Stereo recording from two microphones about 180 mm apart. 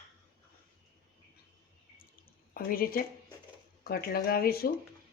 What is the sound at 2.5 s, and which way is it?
A woman's voice, 55° left (ahead or behind).